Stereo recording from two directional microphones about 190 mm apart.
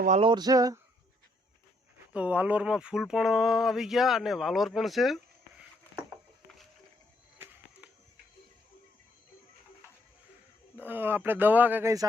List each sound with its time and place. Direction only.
0.2 s a sound: 25° right (ahead or behind)
2.1 s speech: 5° right (ahead or behind)
10.8 s speech: 10° right (ahead or behind)